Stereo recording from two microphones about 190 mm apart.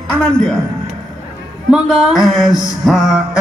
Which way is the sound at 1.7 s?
Centre (ahead or behind).